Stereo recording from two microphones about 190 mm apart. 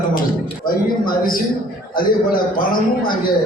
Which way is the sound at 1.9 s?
50° left (ahead or behind).